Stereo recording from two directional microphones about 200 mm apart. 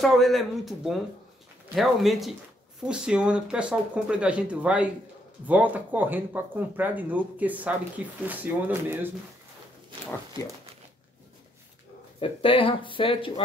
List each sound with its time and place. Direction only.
0.0 s speech: centre (ahead or behind)
12.2 s speech: 25° left (ahead or behind)